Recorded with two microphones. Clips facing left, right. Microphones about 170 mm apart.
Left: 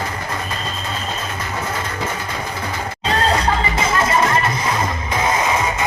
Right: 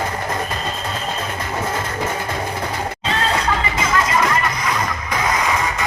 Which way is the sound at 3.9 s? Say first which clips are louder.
Even; 25° left (ahead or behind).